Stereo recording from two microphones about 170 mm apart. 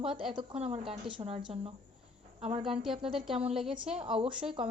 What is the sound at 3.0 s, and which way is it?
Female singing, centre (ahead or behind).